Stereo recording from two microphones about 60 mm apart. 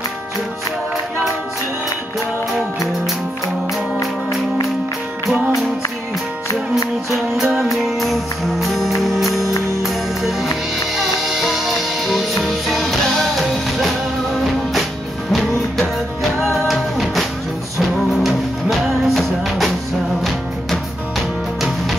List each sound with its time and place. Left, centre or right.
7.1 s music: centre
16.2 s music: centre